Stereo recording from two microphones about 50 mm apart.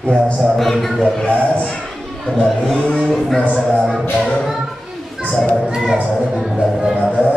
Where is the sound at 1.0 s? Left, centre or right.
Centre.